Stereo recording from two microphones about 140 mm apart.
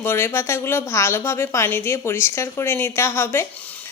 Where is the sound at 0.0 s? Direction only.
15° left (ahead or behind).